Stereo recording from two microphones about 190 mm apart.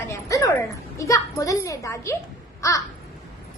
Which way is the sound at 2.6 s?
15° left (ahead or behind).